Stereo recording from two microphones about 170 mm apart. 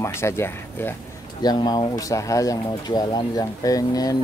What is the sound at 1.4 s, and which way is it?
Speech, 25° left (ahead or behind).